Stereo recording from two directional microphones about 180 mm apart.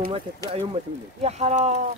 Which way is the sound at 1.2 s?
40° right (ahead or behind).